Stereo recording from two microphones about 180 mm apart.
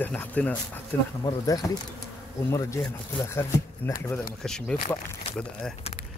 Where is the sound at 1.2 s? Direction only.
20° left (ahead or behind).